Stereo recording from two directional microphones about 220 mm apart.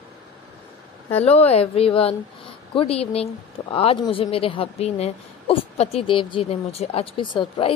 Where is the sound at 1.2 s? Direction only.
30° left (ahead or behind).